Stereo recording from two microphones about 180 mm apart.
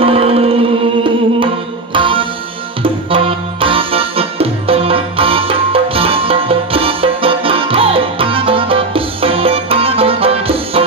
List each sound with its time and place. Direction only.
0.0 s music: 35° right (ahead or behind)
2.0 s music: 30° right (ahead or behind)